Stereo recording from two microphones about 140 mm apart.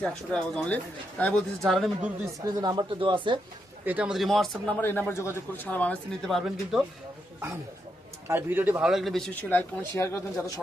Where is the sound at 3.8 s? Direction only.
10° right (ahead or behind).